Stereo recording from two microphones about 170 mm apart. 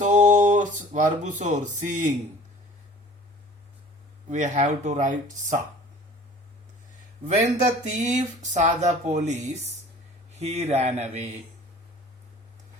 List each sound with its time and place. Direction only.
0.0 s speech: 45° right (ahead or behind)
4.3 s speech: 45° right (ahead or behind)
7.3 s speech: 45° right (ahead or behind)